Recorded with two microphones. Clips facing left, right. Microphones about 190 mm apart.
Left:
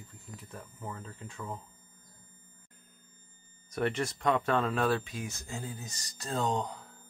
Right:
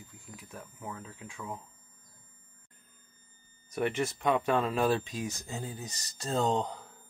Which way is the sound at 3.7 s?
10° right (ahead or behind).